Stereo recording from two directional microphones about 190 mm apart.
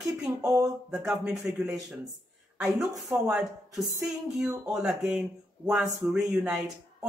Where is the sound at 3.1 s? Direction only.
Centre (ahead or behind).